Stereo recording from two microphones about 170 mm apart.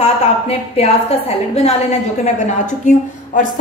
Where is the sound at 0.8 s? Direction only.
35° left (ahead or behind).